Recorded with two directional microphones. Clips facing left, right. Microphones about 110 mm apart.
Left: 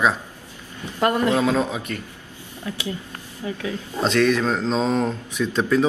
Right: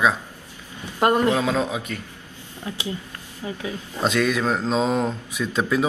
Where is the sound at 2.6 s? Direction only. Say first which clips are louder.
Left 1 dB; 15° right (ahead or behind).